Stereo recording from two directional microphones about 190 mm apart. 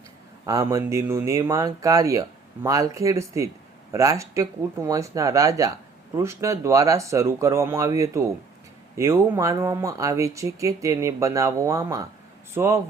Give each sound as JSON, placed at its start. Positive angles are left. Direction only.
{"t": 0.4, "sound": "speech", "side_deg": -20}